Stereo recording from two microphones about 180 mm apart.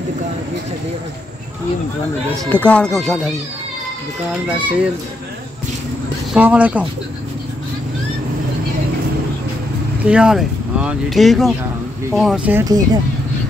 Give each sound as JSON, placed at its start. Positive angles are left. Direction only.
{"t": 2.5, "sound": "speech", "side_deg": 5}
{"t": 4.5, "sound": "speech", "side_deg": -5}
{"t": 6.3, "sound": "speech", "side_deg": -10}
{"t": 10.0, "sound": "speech", "side_deg": -5}
{"t": 12.5, "sound": "speech", "side_deg": -20}